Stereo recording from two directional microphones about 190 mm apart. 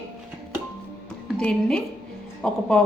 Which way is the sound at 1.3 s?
5° left (ahead or behind).